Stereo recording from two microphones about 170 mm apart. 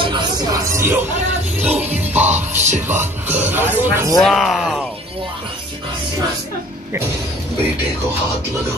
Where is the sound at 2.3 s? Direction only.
45° right (ahead or behind).